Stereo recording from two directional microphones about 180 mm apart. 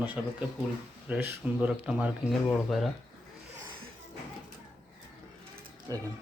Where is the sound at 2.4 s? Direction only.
5° left (ahead or behind).